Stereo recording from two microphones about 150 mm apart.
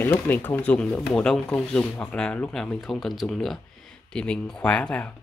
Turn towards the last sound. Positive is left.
turn(degrees=5)  # may be behind; listen again after turning